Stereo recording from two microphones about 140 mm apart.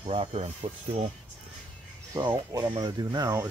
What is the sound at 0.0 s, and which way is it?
Speech, 45° right (ahead or behind).